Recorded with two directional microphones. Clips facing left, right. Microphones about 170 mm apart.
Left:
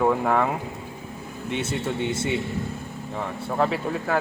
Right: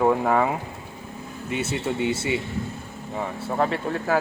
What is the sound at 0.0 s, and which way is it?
Speech, 5° right (ahead or behind).